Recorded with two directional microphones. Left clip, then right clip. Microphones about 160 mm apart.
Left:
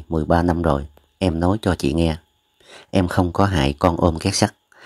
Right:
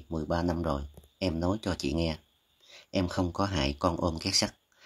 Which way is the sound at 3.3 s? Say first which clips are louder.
Left 11 dB; 40° left (ahead or behind).